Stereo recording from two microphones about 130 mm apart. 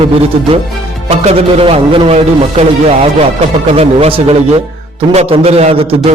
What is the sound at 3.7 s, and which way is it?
A man's voice, 50° right (ahead or behind).